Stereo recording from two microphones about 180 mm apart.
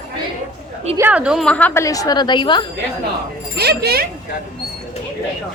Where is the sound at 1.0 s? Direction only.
10° right (ahead or behind).